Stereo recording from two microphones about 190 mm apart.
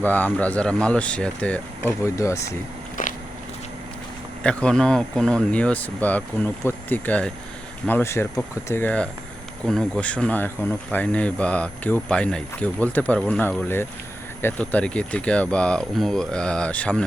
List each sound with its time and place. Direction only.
0.0 s speech: 10° left (ahead or behind)
3.0 s biting: 45° left (ahead or behind)
4.4 s speech: 5° left (ahead or behind)